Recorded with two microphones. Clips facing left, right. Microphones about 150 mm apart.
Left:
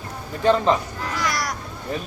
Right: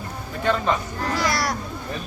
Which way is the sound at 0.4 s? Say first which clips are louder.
Left 4 dB; 30° left (ahead or behind).